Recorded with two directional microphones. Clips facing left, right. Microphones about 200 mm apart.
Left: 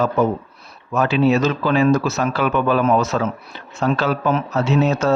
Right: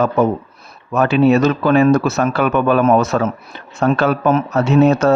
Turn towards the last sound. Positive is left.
turn(degrees=-55)  # may be behind; listen again after turning